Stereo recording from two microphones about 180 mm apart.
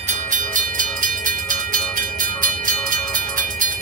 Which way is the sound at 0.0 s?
45° right (ahead or behind).